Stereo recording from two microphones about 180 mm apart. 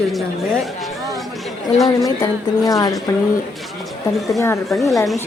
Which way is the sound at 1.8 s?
20° left (ahead or behind).